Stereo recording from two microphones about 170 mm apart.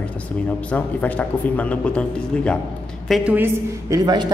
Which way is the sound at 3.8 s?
20° right (ahead or behind).